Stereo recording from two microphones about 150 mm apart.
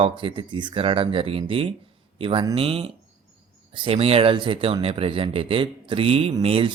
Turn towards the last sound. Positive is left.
turn(degrees=-40)  # may be behind; listen again after turning